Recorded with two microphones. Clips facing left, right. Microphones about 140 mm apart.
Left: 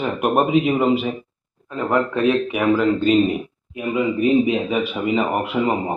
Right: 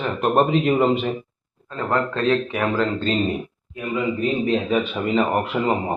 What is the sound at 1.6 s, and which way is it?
Speech, 15° left (ahead or behind).